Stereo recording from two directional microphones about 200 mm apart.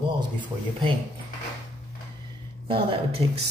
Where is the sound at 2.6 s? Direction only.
25° right (ahead or behind).